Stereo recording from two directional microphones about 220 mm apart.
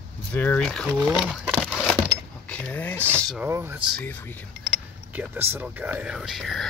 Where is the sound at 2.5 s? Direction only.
5° left (ahead or behind).